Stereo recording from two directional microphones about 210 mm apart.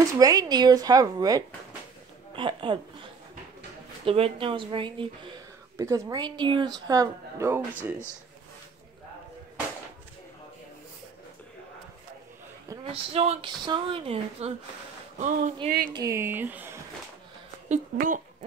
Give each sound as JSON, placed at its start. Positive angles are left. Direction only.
{"t": 0.2, "sound": "speech", "side_deg": -15}
{"t": 12.9, "sound": "speech", "side_deg": -30}
{"t": 15.9, "sound": "speech", "side_deg": -15}
{"t": 17.6, "sound": "speech", "side_deg": -40}